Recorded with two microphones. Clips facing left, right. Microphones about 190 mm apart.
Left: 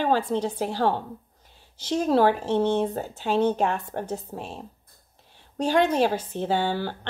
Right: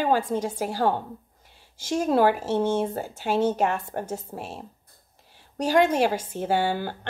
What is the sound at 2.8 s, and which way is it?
Speech, 10° right (ahead or behind).